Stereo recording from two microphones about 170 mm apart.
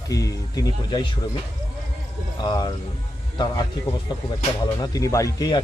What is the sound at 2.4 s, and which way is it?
Speech, 25° left (ahead or behind).